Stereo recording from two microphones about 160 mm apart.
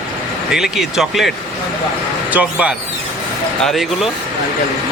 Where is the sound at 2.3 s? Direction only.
10° right (ahead or behind).